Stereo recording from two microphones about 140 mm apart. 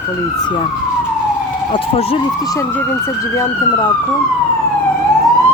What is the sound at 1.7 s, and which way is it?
Speech, 40° left (ahead or behind).